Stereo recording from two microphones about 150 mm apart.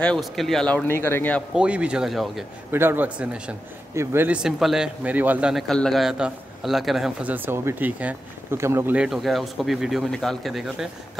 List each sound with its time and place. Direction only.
0.0 s speech: 5° left (ahead or behind)
1.5 s speech: 5° right (ahead or behind)
2.7 s speech: 15° right (ahead or behind)